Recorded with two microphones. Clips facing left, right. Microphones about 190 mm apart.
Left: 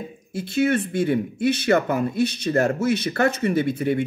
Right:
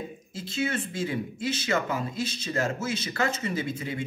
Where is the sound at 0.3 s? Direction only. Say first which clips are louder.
Left 10 dB; 65° left (ahead or behind).